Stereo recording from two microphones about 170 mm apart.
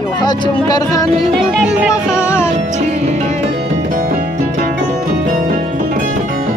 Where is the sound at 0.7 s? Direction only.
20° left (ahead or behind).